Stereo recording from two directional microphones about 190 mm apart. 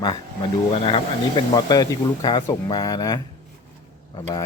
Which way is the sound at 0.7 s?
30° left (ahead or behind).